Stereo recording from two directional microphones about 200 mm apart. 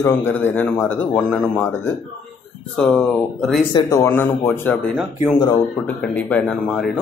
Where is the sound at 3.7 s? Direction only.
15° left (ahead or behind).